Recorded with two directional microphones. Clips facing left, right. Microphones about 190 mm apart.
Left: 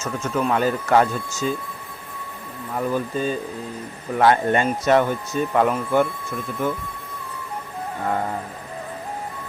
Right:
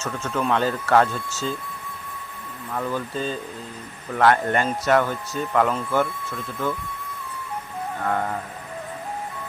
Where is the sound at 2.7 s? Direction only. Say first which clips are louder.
Left 3 dB; 15° left (ahead or behind).